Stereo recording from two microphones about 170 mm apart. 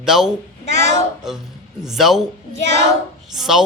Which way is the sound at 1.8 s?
Centre (ahead or behind).